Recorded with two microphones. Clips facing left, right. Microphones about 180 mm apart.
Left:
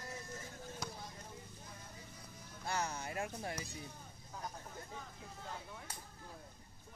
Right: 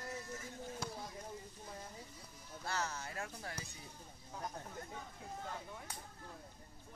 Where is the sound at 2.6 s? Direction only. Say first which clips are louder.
Left 2 dB; 15° left (ahead or behind).